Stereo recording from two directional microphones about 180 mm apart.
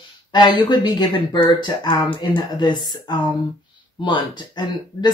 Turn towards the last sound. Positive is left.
turn(degrees=25)  # may be behind; listen again after turning